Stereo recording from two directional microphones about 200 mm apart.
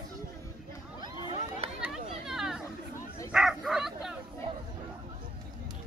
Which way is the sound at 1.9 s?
Centre (ahead or behind).